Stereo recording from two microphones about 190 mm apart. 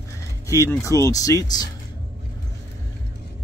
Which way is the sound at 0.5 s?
15° left (ahead or behind).